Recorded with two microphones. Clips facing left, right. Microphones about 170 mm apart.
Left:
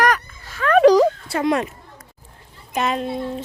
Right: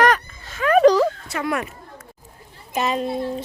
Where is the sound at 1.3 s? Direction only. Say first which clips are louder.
Left 5 dB; 25° left (ahead or behind).